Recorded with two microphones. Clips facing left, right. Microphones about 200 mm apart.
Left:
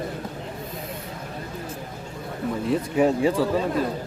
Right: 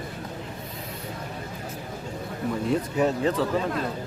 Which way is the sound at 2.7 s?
10° left (ahead or behind).